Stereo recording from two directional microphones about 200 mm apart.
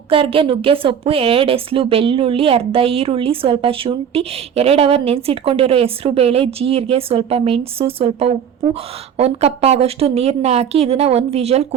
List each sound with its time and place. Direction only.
0.1 s a woman's voice: 25° right (ahead or behind)